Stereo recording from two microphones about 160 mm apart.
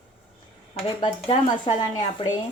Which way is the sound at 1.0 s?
30° left (ahead or behind).